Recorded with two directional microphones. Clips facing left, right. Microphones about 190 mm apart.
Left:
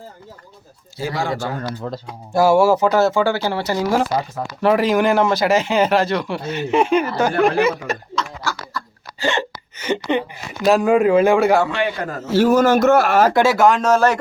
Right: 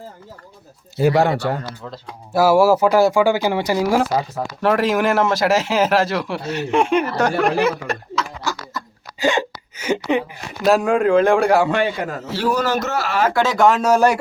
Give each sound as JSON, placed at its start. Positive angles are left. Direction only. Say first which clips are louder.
{"t": 0.9, "sound": "speech", "louder": "right 8 dB", "side_deg": -65}
{"t": 1.8, "sound": "a man's voice", "louder": "left 6 dB", "side_deg": 45}
{"t": 2.3, "sound": "speech", "louder": "even", "side_deg": -5}
{"t": 8.4, "sound": "speech", "louder": "even", "side_deg": -15}
{"t": 12.3, "sound": "a man's voice", "louder": "left 7 dB", "side_deg": 45}
{"t": 13.3, "sound": "speech", "louder": "left 1 dB", "side_deg": 10}